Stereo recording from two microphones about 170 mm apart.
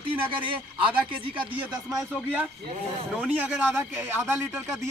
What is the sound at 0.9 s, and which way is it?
Speech, 10° right (ahead or behind).